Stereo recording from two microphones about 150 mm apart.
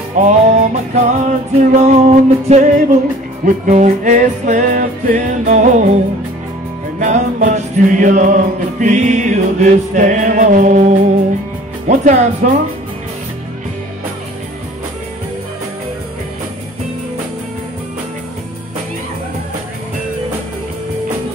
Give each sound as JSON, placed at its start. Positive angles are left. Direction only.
{"t": 0.2, "sound": "music", "side_deg": -50}
{"t": 7.0, "sound": "music", "side_deg": -55}